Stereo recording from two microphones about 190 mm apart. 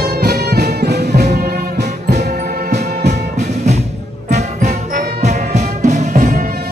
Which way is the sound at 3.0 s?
40° right (ahead or behind).